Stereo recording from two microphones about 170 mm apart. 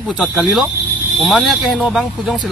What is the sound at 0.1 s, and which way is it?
Speech, 5° right (ahead or behind).